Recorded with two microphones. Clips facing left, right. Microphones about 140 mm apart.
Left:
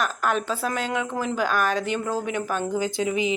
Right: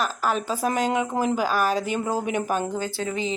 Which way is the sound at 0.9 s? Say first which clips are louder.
Right 3 dB; 15° right (ahead or behind).